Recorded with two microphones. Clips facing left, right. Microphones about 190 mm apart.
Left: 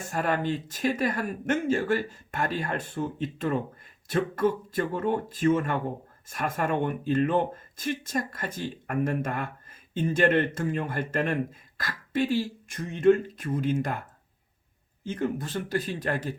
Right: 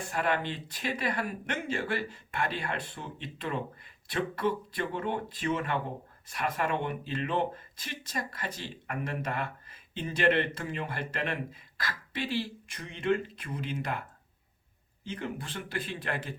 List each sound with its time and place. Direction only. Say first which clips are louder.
0.0 s speech: left 3 dB; 45° left (ahead or behind)
15.0 s speech: left 7 dB; 45° left (ahead or behind)